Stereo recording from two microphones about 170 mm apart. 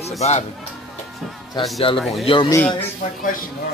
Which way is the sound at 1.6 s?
25° left (ahead or behind).